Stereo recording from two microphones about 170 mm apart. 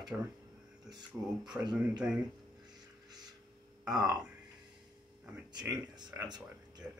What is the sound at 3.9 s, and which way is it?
Speech, 20° right (ahead or behind).